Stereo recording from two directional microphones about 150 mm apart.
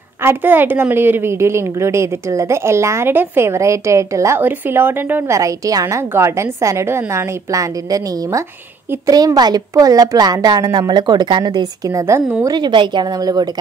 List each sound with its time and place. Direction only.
0.2 s a woman's voice: 15° right (ahead or behind)